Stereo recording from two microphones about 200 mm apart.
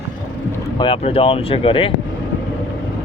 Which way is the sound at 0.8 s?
25° left (ahead or behind).